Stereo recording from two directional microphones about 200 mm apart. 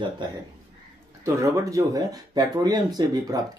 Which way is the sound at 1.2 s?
15° right (ahead or behind).